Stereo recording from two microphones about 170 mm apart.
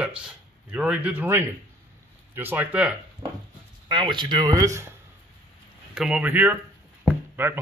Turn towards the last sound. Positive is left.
turn(degrees=-10)  # may be behind; listen again after turning